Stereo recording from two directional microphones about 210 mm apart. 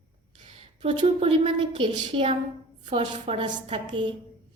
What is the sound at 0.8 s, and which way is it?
A woman's voice, 25° right (ahead or behind).